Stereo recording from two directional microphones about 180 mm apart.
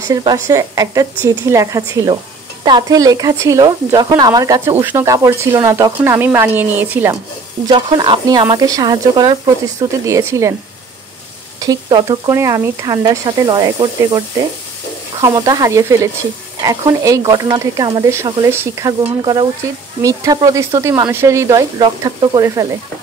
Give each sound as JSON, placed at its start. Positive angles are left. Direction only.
{"t": 0.1, "sound": "speech", "side_deg": -20}
{"t": 7.6, "sound": "speech", "side_deg": -30}
{"t": 11.6, "sound": "speech", "side_deg": -20}